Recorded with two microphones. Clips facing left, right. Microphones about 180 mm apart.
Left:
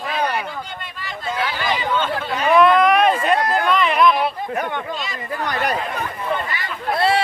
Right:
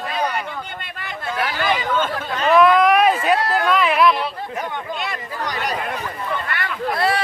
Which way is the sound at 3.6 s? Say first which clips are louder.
Even; 5° right (ahead or behind).